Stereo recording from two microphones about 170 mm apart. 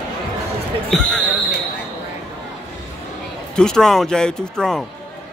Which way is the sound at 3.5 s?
5° left (ahead or behind).